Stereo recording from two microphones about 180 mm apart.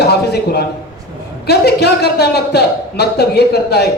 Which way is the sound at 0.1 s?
65° left (ahead or behind).